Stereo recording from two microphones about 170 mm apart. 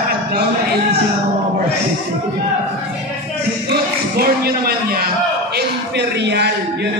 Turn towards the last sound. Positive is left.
turn(degrees=-80)